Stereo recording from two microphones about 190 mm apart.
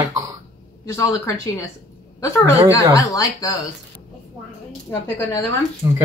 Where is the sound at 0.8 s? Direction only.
15° left (ahead or behind).